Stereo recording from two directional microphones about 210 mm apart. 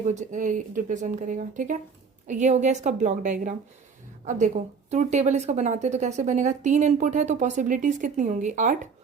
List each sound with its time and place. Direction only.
0.0 s a woman's voice: 35° right (ahead or behind)